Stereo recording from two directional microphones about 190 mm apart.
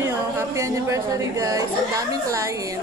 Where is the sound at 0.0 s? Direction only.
15° right (ahead or behind).